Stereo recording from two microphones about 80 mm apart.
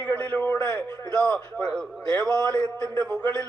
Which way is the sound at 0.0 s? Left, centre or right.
Centre.